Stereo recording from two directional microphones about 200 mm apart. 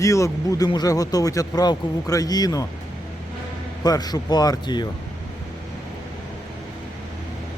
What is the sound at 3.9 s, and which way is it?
Speech, 20° left (ahead or behind).